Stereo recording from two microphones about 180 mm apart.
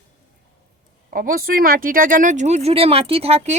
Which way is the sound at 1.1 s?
50° right (ahead or behind).